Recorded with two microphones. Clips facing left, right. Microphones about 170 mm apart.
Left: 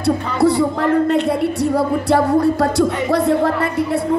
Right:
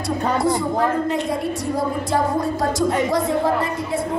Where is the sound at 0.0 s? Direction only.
65° left (ahead or behind).